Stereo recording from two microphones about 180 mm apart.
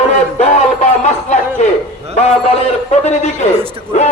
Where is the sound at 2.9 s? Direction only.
40° left (ahead or behind).